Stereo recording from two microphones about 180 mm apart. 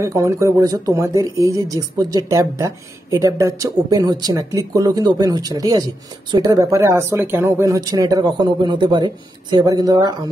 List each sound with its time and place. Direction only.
0.0 s speech: 20° right (ahead or behind)